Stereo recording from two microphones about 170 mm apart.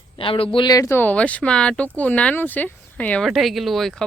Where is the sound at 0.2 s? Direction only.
30° left (ahead or behind).